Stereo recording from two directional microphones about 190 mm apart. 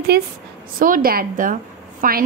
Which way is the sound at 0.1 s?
55° right (ahead or behind).